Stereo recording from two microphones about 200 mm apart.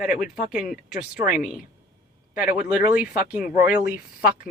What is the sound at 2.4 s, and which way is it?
Speech, 10° right (ahead or behind).